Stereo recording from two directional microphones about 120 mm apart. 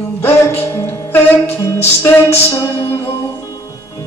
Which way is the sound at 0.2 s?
20° left (ahead or behind).